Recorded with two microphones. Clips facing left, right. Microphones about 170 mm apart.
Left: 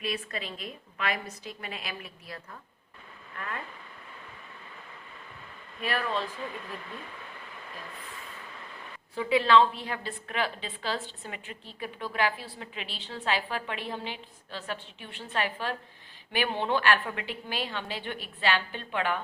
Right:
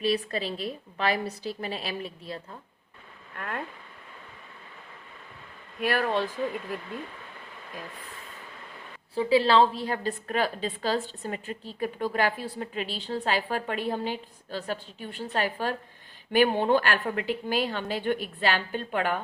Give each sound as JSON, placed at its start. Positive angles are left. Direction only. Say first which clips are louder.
{"t": 0.0, "sound": "a woman's voice", "louder": "right 7 dB", "side_deg": -30}
{"t": 3.3, "sound": "speech", "louder": "right 3 dB", "side_deg": -55}
{"t": 5.8, "sound": "speech", "louder": "right 5 dB", "side_deg": -60}
{"t": 9.1, "sound": "a woman's voice", "louder": "right 2 dB", "side_deg": -35}